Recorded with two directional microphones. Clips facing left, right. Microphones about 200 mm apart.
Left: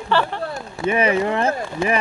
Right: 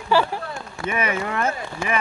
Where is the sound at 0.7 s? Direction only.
30° left (ahead or behind).